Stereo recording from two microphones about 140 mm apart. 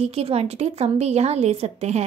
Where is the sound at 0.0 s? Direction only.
45° right (ahead or behind).